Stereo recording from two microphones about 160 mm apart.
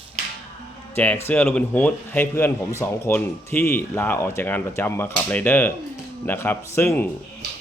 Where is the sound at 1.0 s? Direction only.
10° left (ahead or behind).